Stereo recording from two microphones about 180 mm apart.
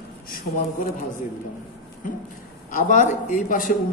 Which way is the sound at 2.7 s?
45° left (ahead or behind).